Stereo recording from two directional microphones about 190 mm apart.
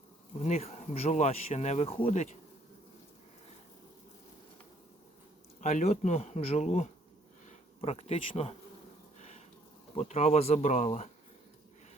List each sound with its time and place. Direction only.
0.3 s speech: 35° left (ahead or behind)
5.5 s speech: 40° left (ahead or behind)
9.1 s a sound: 35° left (ahead or behind)
9.9 s speech: 35° left (ahead or behind)